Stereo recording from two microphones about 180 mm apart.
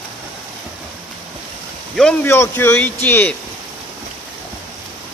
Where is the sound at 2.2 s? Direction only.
15° left (ahead or behind).